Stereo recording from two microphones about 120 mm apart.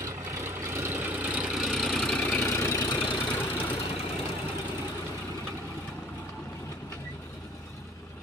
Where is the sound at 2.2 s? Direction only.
15° left (ahead or behind).